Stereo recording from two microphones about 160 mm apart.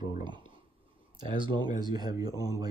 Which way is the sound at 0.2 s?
30° right (ahead or behind).